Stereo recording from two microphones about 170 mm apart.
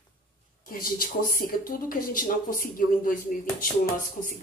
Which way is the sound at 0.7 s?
55° left (ahead or behind).